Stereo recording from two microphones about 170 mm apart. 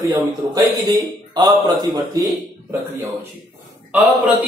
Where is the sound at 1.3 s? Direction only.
25° right (ahead or behind).